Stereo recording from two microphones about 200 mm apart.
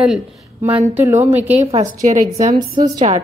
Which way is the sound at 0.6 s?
10° right (ahead or behind).